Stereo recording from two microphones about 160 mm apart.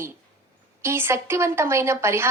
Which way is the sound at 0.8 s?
15° right (ahead or behind).